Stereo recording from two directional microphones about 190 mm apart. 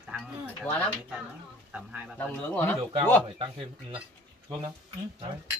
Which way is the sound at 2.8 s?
25° right (ahead or behind).